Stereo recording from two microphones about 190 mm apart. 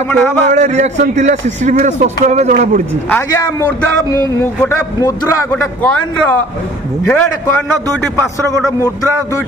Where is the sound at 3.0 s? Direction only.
15° left (ahead or behind).